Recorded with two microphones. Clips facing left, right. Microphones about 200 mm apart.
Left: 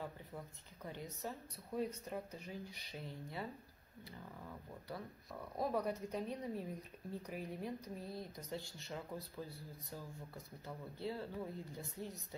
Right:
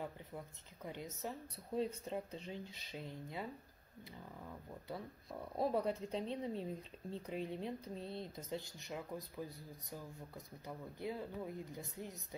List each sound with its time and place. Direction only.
0.8 s speech: 20° right (ahead or behind)
5.6 s speech: 30° right (ahead or behind)